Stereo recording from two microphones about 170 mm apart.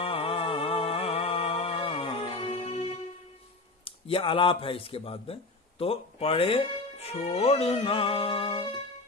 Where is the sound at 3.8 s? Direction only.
30° left (ahead or behind).